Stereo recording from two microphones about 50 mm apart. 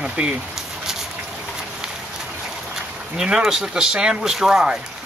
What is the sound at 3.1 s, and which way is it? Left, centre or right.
Speech, centre.